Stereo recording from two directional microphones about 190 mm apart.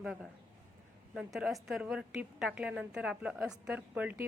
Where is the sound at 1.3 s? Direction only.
5° right (ahead or behind).